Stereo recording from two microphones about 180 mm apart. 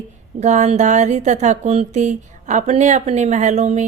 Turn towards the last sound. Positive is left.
turn(degrees=-40)  # may be behind; listen again after turning